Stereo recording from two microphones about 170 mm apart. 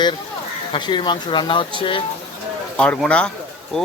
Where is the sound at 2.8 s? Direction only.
5° left (ahead or behind).